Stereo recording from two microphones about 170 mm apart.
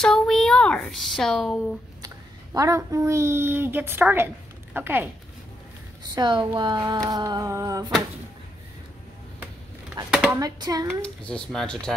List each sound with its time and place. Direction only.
0.0 s a sound: 5° left (ahead or behind)
2.0 s speech: 20° right (ahead or behind)
6.1 s speech: 25° right (ahead or behind)
10.0 s speech: 25° right (ahead or behind)
11.0 s speech: 5° left (ahead or behind)